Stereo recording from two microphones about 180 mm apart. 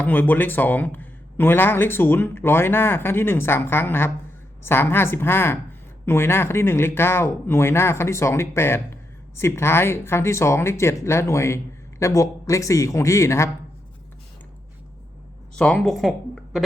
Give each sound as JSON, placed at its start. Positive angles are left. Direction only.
{"t": 0.0, "sound": "a man's voice", "side_deg": 10}
{"t": 15.5, "sound": "speech", "side_deg": 5}